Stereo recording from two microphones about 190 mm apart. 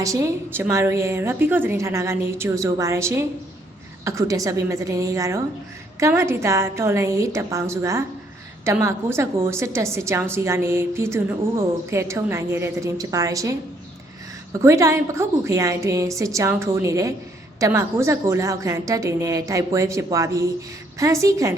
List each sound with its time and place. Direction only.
0.0 s a woman's voice: 15° right (ahead or behind)
14.6 s a woman's voice: 15° right (ahead or behind)